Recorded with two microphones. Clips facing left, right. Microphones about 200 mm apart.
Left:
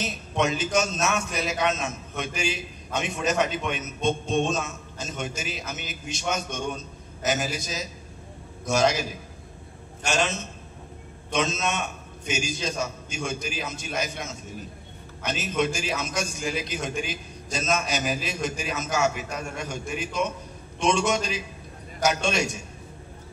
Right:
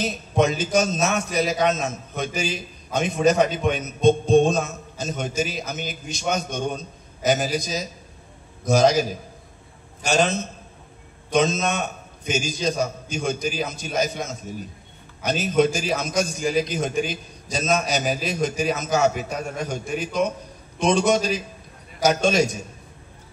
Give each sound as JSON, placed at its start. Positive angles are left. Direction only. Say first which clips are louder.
{"t": 0.0, "sound": "a man's voice", "louder": "right 5 dB", "side_deg": -40}